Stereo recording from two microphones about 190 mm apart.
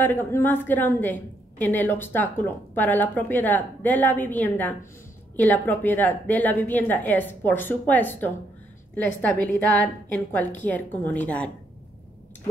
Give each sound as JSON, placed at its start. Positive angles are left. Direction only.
{"t": 0.0, "sound": "a woman's voice", "side_deg": 10}